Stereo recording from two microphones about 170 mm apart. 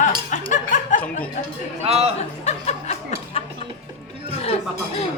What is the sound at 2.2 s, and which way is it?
Chuckle, 40° left (ahead or behind).